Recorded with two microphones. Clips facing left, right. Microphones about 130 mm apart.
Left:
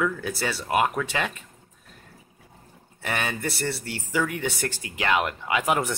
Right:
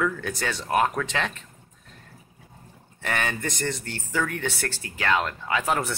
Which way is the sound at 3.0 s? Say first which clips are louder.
Even; 10° left (ahead or behind).